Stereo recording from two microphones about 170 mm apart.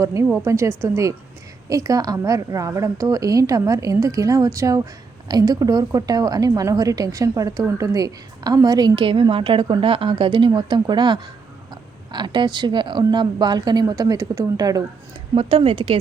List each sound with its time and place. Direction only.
0.0 s a woman's voice: 20° right (ahead or behind)
15.4 s speech: 35° right (ahead or behind)